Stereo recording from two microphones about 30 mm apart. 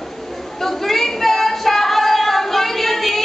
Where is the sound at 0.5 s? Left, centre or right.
Centre.